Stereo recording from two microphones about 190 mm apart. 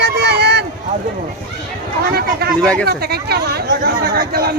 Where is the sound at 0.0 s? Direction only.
60° right (ahead or behind).